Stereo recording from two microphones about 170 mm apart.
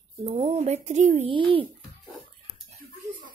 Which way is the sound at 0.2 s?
35° right (ahead or behind).